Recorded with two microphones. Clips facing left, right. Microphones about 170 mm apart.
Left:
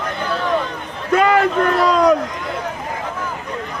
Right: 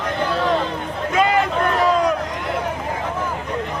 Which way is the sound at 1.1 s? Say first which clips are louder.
Left 4 dB; 60° left (ahead or behind).